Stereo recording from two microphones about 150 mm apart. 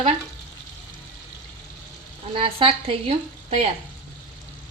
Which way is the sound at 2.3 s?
35° right (ahead or behind).